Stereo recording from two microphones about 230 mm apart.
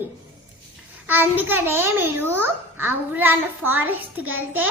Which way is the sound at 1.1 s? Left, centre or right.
Centre.